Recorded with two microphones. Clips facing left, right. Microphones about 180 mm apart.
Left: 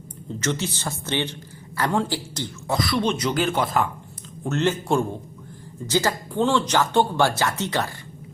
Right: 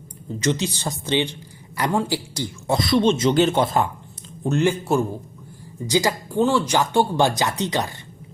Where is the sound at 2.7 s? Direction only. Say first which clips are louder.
Right 5 dB; 25° right (ahead or behind).